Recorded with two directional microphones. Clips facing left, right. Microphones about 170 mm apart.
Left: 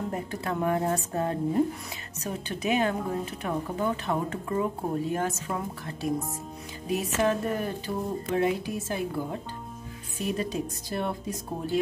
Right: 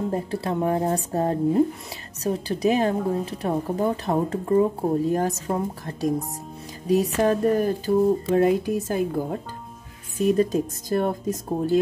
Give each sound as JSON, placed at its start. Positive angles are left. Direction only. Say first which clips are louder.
{"t": 0.1, "sound": "a woman's voice", "louder": "right 5 dB", "side_deg": -30}